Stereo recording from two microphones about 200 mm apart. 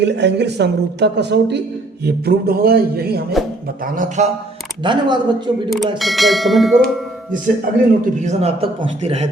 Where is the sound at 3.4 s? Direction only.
Centre (ahead or behind).